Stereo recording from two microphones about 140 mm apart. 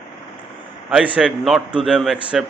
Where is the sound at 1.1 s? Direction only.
5° right (ahead or behind).